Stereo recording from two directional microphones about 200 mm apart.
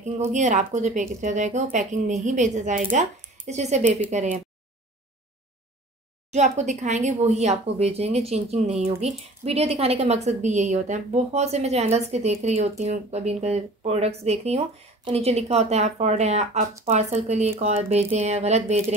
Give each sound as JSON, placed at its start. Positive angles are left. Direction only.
{"t": 0.3, "sound": "speech", "side_deg": -35}
{"t": 6.3, "sound": "speech", "side_deg": -35}